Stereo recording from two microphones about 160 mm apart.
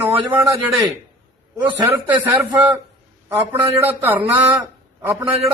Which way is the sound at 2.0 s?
10° right (ahead or behind).